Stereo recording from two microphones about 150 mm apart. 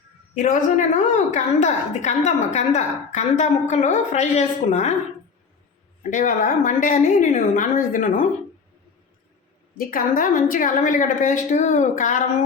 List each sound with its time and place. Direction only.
0.9 s a woman's voice: 55° left (ahead or behind)
6.0 s a woman's voice: 60° left (ahead or behind)
9.7 s a woman's voice: 70° left (ahead or behind)